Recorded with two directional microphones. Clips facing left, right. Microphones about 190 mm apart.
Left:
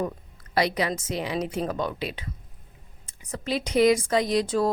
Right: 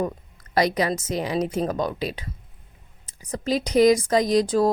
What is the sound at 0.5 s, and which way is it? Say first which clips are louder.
Speech: right 3 dB; 40° right (ahead or behind).